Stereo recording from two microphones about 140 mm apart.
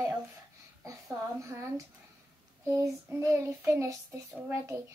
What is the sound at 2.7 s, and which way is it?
Child singing, 20° right (ahead or behind).